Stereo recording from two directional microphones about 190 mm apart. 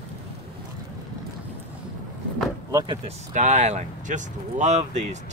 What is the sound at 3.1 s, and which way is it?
Speech, 35° right (ahead or behind).